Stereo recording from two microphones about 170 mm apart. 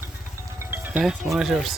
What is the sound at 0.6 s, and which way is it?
Music, 10° right (ahead or behind).